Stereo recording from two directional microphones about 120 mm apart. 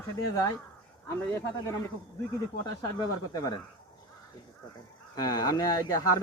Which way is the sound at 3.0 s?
35° left (ahead or behind).